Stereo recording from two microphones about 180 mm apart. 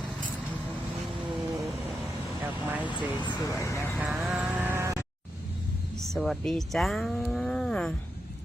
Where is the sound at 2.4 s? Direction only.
10° right (ahead or behind).